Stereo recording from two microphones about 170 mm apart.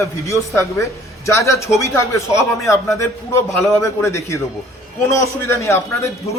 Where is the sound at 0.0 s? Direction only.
15° left (ahead or behind).